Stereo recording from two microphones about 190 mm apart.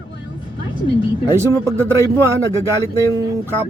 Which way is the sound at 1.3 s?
15° right (ahead or behind).